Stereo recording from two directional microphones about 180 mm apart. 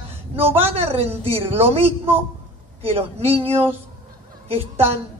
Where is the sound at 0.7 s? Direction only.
35° right (ahead or behind).